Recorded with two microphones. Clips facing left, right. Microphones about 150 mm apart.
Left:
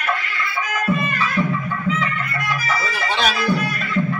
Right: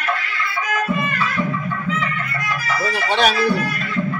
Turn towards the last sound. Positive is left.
turn(degrees=-60)  # may be behind; listen again after turning